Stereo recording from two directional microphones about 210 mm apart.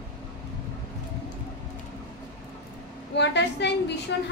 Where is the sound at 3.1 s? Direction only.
55° left (ahead or behind).